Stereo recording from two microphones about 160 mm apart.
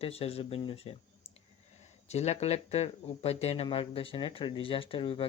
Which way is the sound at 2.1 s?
45° left (ahead or behind).